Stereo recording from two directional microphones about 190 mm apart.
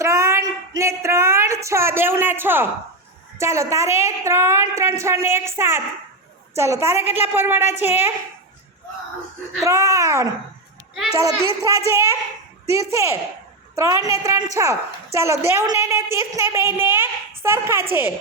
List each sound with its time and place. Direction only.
0.0 s a sound: 15° right (ahead or behind)
3.3 s a woman's voice: 15° right (ahead or behind)
9.6 s a woman's voice: 15° right (ahead or behind)